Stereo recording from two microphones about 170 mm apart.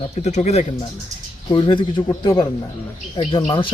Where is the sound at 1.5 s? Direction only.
30° left (ahead or behind).